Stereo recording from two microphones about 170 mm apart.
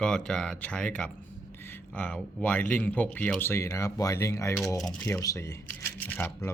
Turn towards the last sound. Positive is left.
turn(degrees=10)  # may be behind; listen again after turning